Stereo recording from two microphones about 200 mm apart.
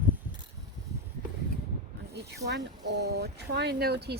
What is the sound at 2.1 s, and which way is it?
Speech, 55° right (ahead or behind).